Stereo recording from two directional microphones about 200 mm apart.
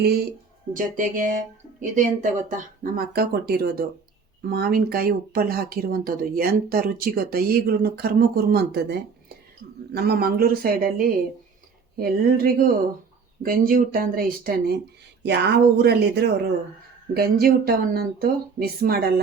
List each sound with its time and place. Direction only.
0.7 s speech: 40° right (ahead or behind)
15.2 s speech: 60° right (ahead or behind)